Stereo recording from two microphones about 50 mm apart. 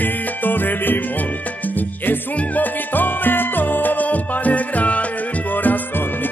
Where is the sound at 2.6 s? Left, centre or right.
Left.